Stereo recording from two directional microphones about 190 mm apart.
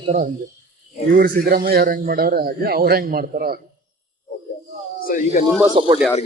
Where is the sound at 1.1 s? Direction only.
50° right (ahead or behind).